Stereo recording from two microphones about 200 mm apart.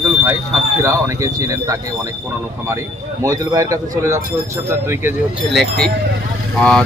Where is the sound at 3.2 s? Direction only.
15° right (ahead or behind).